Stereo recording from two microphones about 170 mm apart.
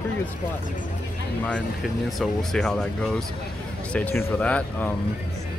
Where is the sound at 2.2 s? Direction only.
Centre (ahead or behind).